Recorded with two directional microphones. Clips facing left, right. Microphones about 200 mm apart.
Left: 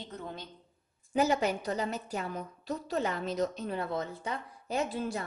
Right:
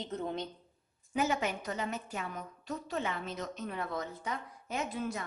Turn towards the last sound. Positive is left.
turn(degrees=30)  # may be behind; listen again after turning